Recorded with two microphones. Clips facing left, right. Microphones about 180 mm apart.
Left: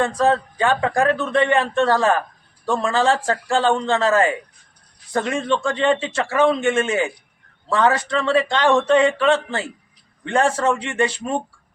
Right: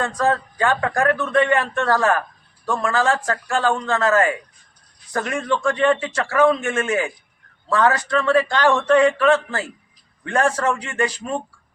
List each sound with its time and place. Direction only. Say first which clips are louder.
0.0 s a man's voice: left 3 dB; 25° left (ahead or behind)